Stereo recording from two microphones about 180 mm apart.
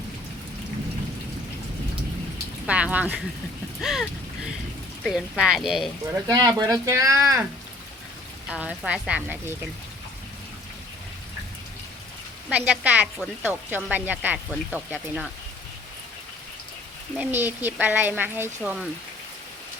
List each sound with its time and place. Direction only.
2.6 s a woman's voice: 5° right (ahead or behind)
6.2 s a woman's voice: 20° right (ahead or behind)
8.4 s a woman's voice: 5° right (ahead or behind)
12.5 s a woman's voice: 10° right (ahead or behind)
17.2 s a woman's voice: 10° right (ahead or behind)